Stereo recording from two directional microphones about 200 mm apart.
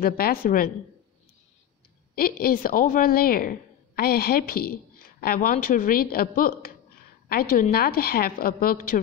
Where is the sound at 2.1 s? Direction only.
50° left (ahead or behind).